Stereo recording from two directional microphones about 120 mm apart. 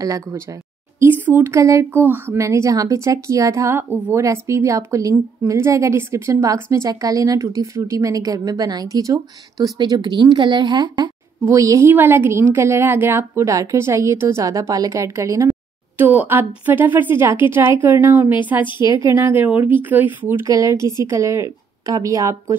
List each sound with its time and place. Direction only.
0.0 s a woman's voice: 30° right (ahead or behind)
16.0 s a woman's voice: 15° right (ahead or behind)